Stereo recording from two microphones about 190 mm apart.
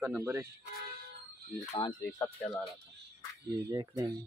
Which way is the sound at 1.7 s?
25° left (ahead or behind).